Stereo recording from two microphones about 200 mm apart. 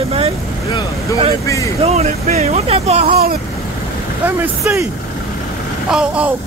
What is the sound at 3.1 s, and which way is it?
Vehicle, 50° right (ahead or behind).